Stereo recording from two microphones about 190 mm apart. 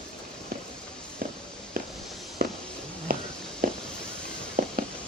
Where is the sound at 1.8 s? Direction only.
50° right (ahead or behind).